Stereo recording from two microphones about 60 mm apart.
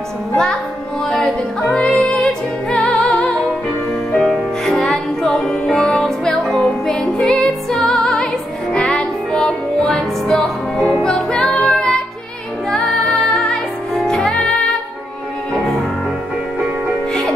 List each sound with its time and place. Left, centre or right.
1.0 s music: centre
13.9 s music: centre